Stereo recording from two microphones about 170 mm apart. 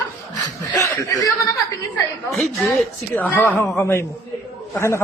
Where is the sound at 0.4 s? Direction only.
20° left (ahead or behind).